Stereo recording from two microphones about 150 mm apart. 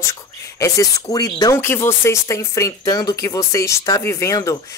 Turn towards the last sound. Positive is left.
turn(degrees=20)  # may be behind; listen again after turning